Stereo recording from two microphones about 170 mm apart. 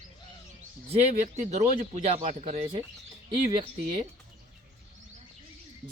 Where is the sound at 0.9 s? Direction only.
40° right (ahead or behind).